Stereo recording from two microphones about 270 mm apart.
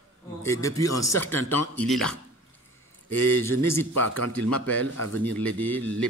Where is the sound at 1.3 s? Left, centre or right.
Left.